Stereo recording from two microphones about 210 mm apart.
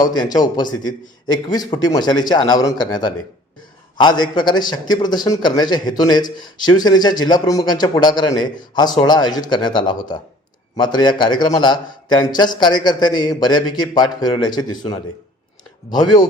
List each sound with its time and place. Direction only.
0.0 s a man's voice: 20° left (ahead or behind)